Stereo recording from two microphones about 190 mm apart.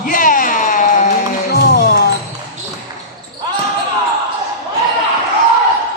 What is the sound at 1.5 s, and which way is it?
Music, 60° left (ahead or behind).